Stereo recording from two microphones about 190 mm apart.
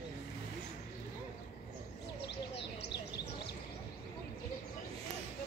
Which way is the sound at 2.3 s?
65° left (ahead or behind).